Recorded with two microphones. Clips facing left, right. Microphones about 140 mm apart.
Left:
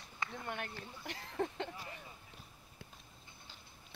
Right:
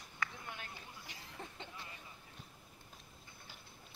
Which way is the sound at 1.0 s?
60° left (ahead or behind).